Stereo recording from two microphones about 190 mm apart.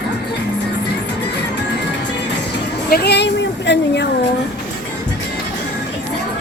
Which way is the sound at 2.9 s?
60° left (ahead or behind).